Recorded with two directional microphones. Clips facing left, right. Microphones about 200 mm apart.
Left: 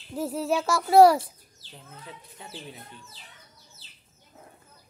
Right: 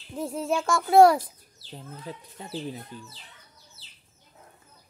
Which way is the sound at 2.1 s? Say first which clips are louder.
Right 7 dB; 40° right (ahead or behind).